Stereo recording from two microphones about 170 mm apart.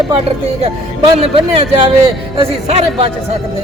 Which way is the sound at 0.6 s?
35° right (ahead or behind).